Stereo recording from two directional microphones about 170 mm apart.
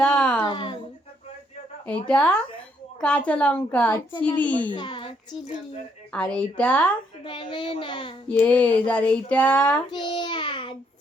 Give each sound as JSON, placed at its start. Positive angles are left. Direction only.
{"t": 0.0, "sound": "speech", "side_deg": 10}
{"t": 0.4, "sound": "a sound", "side_deg": 30}
{"t": 2.0, "sound": "a woman's voice", "side_deg": 5}
{"t": 4.7, "sound": "a woman's voice", "side_deg": 30}
{"t": 6.1, "sound": "a woman's voice", "side_deg": 10}
{"t": 7.3, "sound": "speech", "side_deg": 30}
{"t": 8.3, "sound": "a woman's voice", "side_deg": 10}
{"t": 9.9, "sound": "babbling", "side_deg": 30}